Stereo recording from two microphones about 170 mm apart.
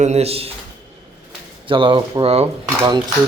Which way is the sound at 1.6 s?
30° right (ahead or behind).